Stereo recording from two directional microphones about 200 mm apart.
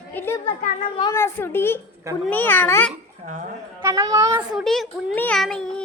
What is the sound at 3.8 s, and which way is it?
Speech, 15° right (ahead or behind).